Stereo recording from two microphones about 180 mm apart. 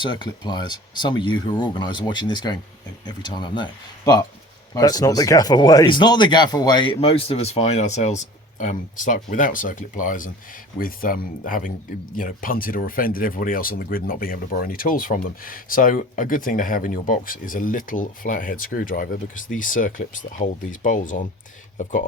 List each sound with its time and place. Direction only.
0.0 s speech: 25° left (ahead or behind); by 21.2 s 45° left (ahead or behind)